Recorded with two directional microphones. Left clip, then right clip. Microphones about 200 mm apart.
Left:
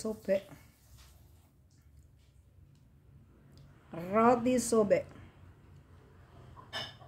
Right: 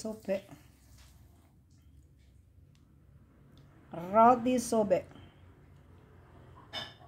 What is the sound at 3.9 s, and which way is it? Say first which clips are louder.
Speech: right 4 dB; centre (ahead or behind).